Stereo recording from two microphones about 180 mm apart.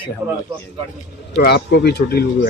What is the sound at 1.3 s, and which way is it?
Speech, 65° left (ahead or behind).